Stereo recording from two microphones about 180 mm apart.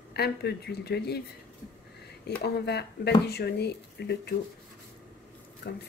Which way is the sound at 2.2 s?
65° left (ahead or behind).